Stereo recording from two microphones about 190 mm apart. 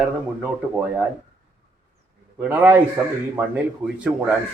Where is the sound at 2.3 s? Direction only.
10° right (ahead or behind).